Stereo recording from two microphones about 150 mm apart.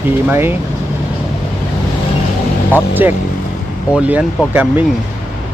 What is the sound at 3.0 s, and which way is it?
Speech, 15° right (ahead or behind).